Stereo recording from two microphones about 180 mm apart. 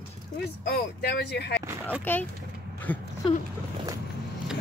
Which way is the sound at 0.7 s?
60° left (ahead or behind).